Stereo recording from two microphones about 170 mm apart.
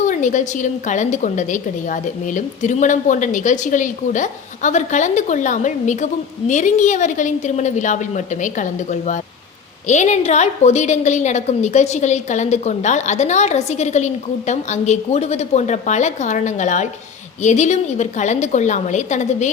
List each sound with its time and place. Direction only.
0.0 s a woman's voice: 45° left (ahead or behind)